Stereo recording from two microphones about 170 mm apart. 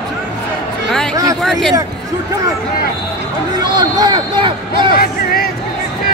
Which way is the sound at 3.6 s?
25° right (ahead or behind).